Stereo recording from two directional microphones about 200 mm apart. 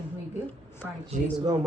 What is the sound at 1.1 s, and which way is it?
Speech, 35° right (ahead or behind).